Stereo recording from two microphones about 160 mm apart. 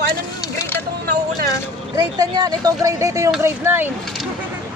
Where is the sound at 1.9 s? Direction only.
25° right (ahead or behind).